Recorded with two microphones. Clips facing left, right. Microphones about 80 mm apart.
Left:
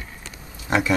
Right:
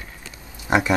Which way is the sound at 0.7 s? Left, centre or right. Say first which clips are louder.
Right 2 dB; right.